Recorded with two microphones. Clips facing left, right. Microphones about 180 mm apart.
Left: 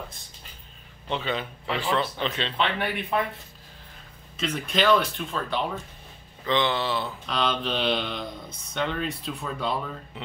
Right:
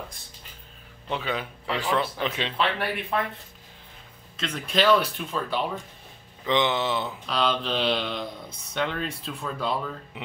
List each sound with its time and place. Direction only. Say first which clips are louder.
1.0 s speech: left 1 dB; 5° right (ahead or behind)
4.4 s speech: even; 5° left (ahead or behind)
6.4 s speech: right 1 dB; 15° right (ahead or behind)
7.1 s speech: right 1 dB; centre (ahead or behind)